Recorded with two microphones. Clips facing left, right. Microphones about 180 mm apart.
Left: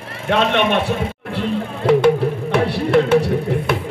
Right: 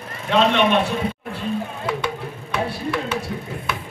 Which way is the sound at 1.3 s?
60° left (ahead or behind).